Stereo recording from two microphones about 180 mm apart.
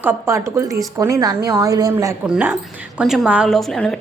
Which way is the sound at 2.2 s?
5° right (ahead or behind).